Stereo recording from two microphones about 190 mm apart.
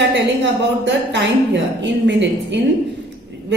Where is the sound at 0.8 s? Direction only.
70° right (ahead or behind).